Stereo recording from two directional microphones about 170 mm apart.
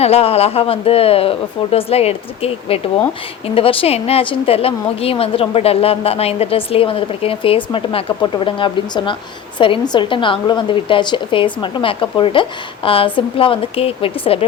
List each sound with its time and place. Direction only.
0.0 s a woman's voice: 35° left (ahead or behind)